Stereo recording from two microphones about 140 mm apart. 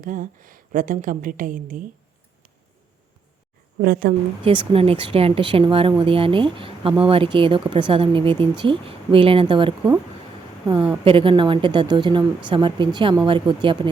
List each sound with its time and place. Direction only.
0.0 s a woman's voice: 70° right (ahead or behind)
3.8 s speech: 90° right
4.4 s speech: 40° right (ahead or behind)
11.0 s speech: 40° right (ahead or behind)